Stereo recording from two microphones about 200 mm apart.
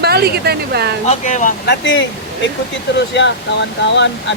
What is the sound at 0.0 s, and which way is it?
Speech, 55° right (ahead or behind).